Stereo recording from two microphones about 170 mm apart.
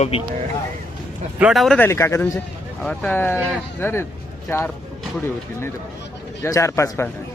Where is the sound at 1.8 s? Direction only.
15° left (ahead or behind).